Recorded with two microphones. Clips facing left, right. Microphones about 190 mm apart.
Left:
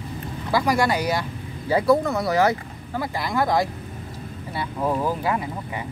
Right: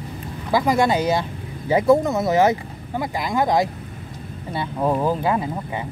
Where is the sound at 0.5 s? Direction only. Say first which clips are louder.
Right 3 dB; 20° right (ahead or behind).